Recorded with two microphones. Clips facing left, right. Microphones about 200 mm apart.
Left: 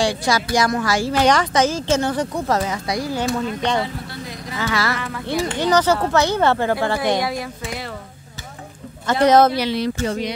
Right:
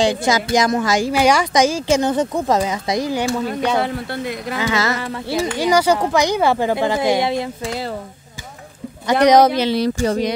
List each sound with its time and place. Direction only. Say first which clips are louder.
0.0 s speech: right 3 dB; 20° right (ahead or behind)
3.8 s speech: right 6 dB; 60° right (ahead or behind)
4.6 s speech: right 2 dB; 20° right (ahead or behind)
4.9 s a sound: right 3 dB; 30° right (ahead or behind)
5.6 s speech: right 1 dB; 10° right (ahead or behind); by 7.9 s 30° right (ahead or behind)
9.0 s speech: right 2 dB; 15° right (ahead or behind)
9.7 s a sound: right 4 dB; 40° right (ahead or behind)